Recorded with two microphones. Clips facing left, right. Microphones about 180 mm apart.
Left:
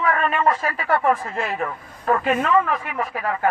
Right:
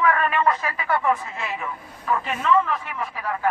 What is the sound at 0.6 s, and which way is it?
A man's voice, 50° left (ahead or behind).